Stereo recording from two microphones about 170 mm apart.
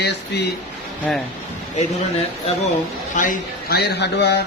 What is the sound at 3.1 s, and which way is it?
A man's voice, 55° left (ahead or behind).